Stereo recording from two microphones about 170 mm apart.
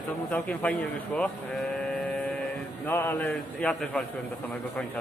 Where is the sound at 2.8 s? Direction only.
10° left (ahead or behind).